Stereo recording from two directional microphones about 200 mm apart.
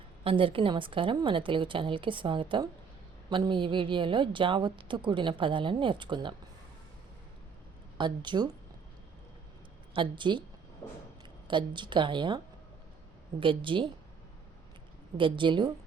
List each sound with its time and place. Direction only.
0.3 s a woman's voice: 25° right (ahead or behind)
7.9 s a woman's voice: 25° right (ahead or behind)
9.9 s a woman's voice: 25° right (ahead or behind)
10.8 s a sound: 10° left (ahead or behind)
11.4 s a woman's voice: 25° right (ahead or behind)
13.4 s a woman's voice: 25° right (ahead or behind)
15.2 s a woman's voice: 25° right (ahead or behind)